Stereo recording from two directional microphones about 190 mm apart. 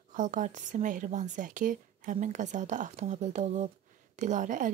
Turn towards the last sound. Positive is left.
turn(degrees=-40)  # may be behind; listen again after turning